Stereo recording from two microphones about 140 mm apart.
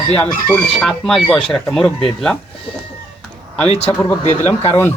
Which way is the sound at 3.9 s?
10° left (ahead or behind).